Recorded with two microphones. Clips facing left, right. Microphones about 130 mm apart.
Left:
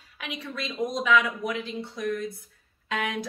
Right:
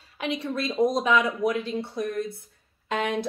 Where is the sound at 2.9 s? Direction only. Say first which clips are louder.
Right 3 dB; 30° right (ahead or behind).